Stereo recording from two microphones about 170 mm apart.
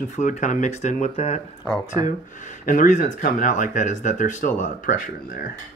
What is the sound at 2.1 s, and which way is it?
Speech, 45° left (ahead or behind).